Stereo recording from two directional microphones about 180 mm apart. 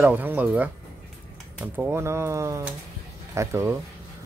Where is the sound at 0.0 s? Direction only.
10° right (ahead or behind).